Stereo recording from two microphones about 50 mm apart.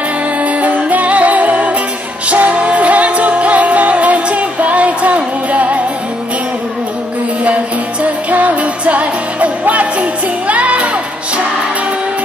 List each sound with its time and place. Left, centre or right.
0.4 s music: right
8.0 s music: right